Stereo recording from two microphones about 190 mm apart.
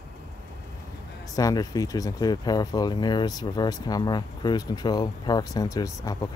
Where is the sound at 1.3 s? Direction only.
20° left (ahead or behind).